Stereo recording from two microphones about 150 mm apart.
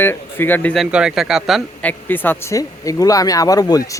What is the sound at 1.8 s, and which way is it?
A man's voice, 10° left (ahead or behind).